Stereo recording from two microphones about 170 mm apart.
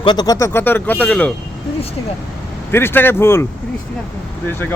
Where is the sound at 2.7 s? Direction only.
15° left (ahead or behind).